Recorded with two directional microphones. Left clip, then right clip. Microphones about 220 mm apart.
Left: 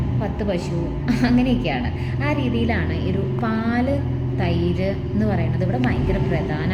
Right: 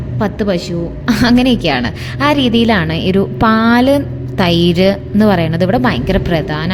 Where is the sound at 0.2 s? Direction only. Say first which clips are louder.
Right 10 dB; 40° right (ahead or behind).